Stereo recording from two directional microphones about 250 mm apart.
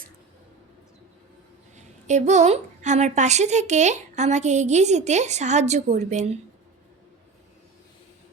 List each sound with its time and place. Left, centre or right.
1.7 s a woman's voice: right